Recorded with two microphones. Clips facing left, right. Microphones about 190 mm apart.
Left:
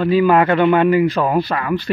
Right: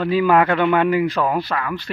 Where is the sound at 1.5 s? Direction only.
15° left (ahead or behind).